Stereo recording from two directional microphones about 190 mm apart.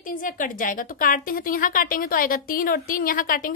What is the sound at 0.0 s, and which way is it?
A woman's voice, 45° left (ahead or behind).